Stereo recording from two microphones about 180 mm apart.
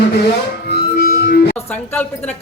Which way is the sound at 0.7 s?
60° left (ahead or behind).